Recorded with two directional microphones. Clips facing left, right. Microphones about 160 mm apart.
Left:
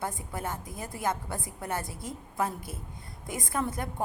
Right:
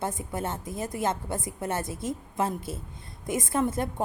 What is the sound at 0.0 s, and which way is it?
A woman's voice, 20° right (ahead or behind).